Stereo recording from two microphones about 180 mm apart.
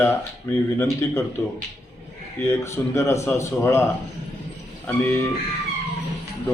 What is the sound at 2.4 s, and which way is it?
Speech, 15° left (ahead or behind).